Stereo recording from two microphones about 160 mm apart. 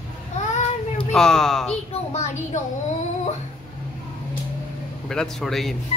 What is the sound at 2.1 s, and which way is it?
Speech, 45° left (ahead or behind).